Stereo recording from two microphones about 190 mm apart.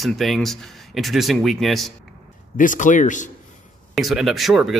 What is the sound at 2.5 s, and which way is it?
Speech, 45° left (ahead or behind).